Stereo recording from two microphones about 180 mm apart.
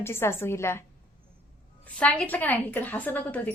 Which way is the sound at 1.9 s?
5° left (ahead or behind).